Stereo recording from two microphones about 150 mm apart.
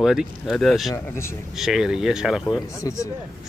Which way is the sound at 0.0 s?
5° right (ahead or behind).